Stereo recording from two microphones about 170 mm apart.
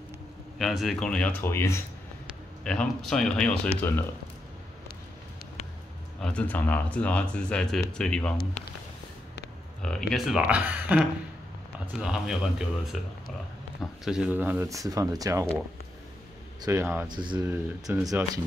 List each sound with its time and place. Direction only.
0.6 s speech: centre (ahead or behind)
2.2 s speech: 5° left (ahead or behind)
6.2 s speech: 10° left (ahead or behind)
9.8 s speech: 5° left (ahead or behind)
14.0 s speech: 5° right (ahead or behind); by 15.4 s 20° right (ahead or behind)
16.6 s speech: 15° right (ahead or behind)
17.1 s speech: 25° right (ahead or behind)